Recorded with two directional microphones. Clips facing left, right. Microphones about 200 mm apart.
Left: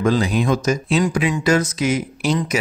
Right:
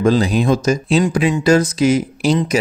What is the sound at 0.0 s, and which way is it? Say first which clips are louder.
Speech: right 4 dB; 35° right (ahead or behind).